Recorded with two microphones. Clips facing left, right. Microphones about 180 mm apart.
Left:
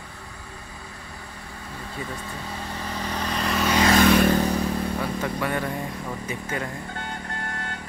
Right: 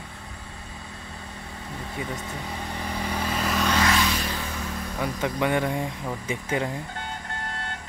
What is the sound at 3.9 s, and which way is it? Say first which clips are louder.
Vehicle: left 8 dB; 55° left (ahead or behind).